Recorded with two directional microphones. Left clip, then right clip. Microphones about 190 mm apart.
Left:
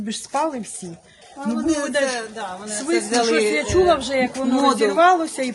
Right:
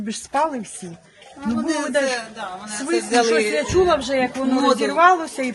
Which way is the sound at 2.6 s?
10° left (ahead or behind).